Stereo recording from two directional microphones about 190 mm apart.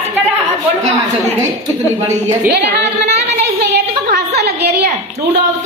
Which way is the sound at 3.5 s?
60° right (ahead or behind).